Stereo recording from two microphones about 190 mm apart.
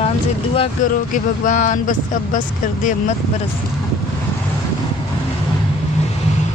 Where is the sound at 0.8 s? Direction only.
45° left (ahead or behind).